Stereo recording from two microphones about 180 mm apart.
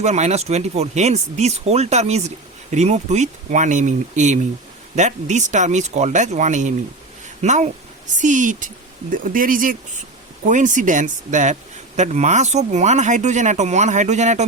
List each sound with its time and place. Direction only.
0.0 s speech: 40° right (ahead or behind)